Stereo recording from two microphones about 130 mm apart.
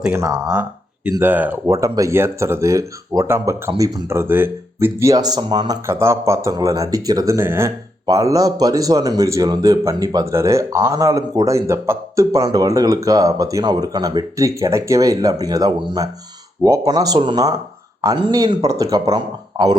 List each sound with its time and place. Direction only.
0.1 s speech: 25° right (ahead or behind)
0.5 s a sound: 10° right (ahead or behind)
1.2 s speech: 15° right (ahead or behind)
4.2 s speech: 15° right (ahead or behind); by 5.8 s 35° right (ahead or behind)
5.8 s speech: 20° right (ahead or behind)